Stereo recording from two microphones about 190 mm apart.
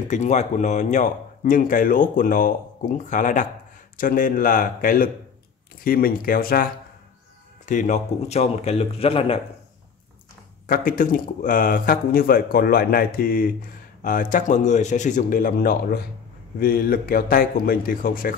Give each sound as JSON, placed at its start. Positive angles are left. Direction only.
{"t": 0.1, "sound": "a man's voice", "side_deg": 40}
{"t": 10.7, "sound": "speech", "side_deg": 45}